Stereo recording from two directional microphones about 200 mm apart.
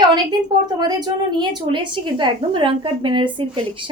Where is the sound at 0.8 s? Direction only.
20° right (ahead or behind).